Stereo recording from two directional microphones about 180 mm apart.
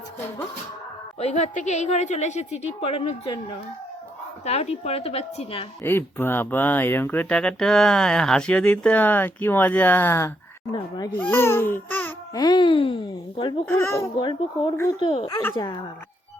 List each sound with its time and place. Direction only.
1.2 s a woman's voice: 40° left (ahead or behind)
2.8 s babbling: 30° left (ahead or behind)
4.4 s a woman's voice: 35° left (ahead or behind)
5.8 s speech: 10° left (ahead or behind)
10.7 s babbling: 25° left (ahead or behind)
11.2 s babbling: 15° left (ahead or behind)
13.7 s babbling: 15° left (ahead or behind)
15.0 s a woman's voice: 35° left (ahead or behind)
15.3 s speech: 15° left (ahead or behind)
15.5 s babbling: 25° left (ahead or behind)